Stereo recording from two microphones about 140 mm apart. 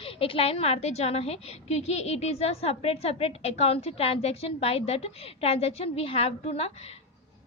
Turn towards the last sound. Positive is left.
turn(degrees=45)  # may be behind; listen again after turning